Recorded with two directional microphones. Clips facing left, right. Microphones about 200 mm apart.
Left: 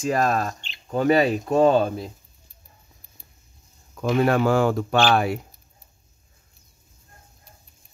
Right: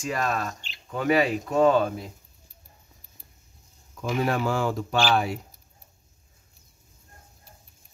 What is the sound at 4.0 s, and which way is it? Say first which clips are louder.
Speech: left 6 dB; 60° left (ahead or behind).